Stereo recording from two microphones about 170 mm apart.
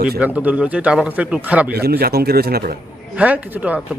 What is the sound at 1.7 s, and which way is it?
A man's voice, 70° right (ahead or behind).